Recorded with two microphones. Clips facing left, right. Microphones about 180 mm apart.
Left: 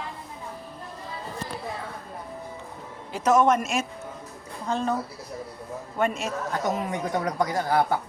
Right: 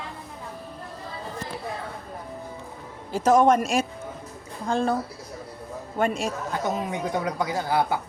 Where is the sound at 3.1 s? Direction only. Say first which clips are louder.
Right 2 dB; 30° right (ahead or behind).